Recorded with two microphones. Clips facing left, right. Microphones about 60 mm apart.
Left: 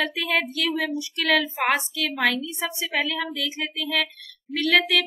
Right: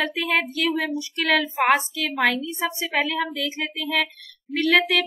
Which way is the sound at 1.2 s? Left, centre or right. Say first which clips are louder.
Right 1 dB; centre.